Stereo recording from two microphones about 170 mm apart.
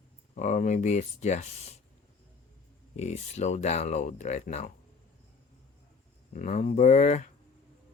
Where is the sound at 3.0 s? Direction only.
40° left (ahead or behind).